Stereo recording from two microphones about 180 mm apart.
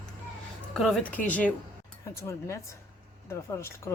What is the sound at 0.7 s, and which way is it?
Speech, 5° left (ahead or behind).